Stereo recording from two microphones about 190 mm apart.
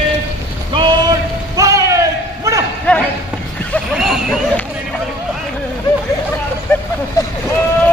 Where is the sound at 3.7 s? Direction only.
Centre (ahead or behind).